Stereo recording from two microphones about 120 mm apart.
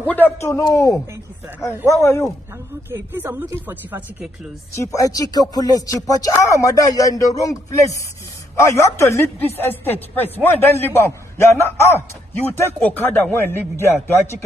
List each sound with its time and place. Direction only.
0.0 s speech: 15° left (ahead or behind)
2.5 s speech: 20° right (ahead or behind)
4.7 s speech: 30° left (ahead or behind)